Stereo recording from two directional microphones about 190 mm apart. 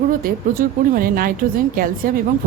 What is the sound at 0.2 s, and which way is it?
Speech, 50° right (ahead or behind).